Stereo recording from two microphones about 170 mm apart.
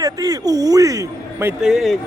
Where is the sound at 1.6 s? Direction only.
Centre (ahead or behind).